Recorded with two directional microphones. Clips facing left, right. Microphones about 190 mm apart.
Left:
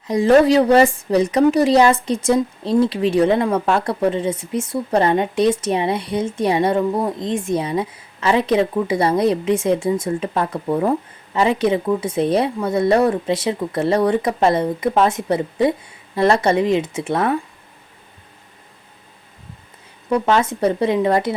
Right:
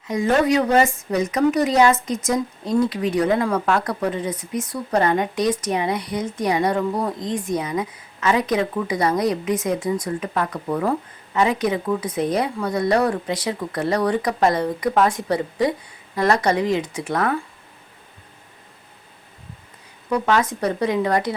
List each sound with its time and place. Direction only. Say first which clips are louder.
0.1 s a woman's voice: left 6 dB; 35° left (ahead or behind)
20.1 s a woman's voice: left 3 dB; 25° left (ahead or behind)